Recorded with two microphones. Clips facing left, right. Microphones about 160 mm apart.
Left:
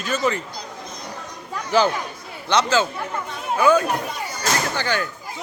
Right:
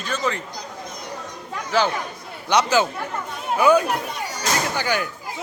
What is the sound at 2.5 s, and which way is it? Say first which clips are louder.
Speech: right 1 dB; 15° right (ahead or behind).